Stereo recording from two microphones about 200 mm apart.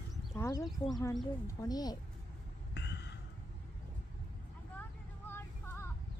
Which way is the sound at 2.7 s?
60° left (ahead or behind).